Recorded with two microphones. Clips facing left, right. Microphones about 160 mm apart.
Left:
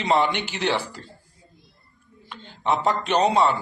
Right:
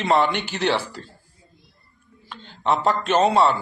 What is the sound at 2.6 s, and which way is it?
Speech, 15° left (ahead or behind).